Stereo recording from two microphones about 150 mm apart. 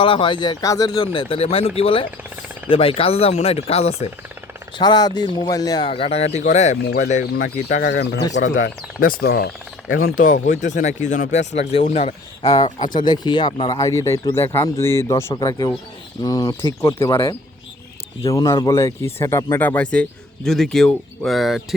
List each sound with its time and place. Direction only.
0.0 s speech: 35° left (ahead or behind)
4.8 s speech: 30° left (ahead or behind)
5.9 s speech: 40° left (ahead or behind); by 7.3 s 55° left (ahead or behind)
7.7 s speech: 80° left
8.3 s speech: 55° left (ahead or behind)
8.6 s speech: 75° left (ahead or behind); by 9.5 s 90° left
10.2 s speech: 60° left (ahead or behind); by 12.5 s 40° left (ahead or behind)
12.5 s speech: 25° left (ahead or behind)
18.3 s speech: 25° left (ahead or behind); by 21.8 s centre (ahead or behind)